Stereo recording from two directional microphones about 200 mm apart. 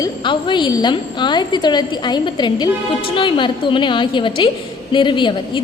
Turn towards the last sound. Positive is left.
turn(degrees=25)  # may be behind; listen again after turning